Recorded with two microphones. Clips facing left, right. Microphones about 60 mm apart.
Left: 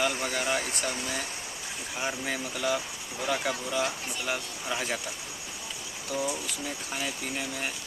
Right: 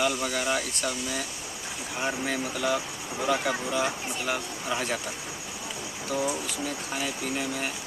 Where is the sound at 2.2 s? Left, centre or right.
Centre.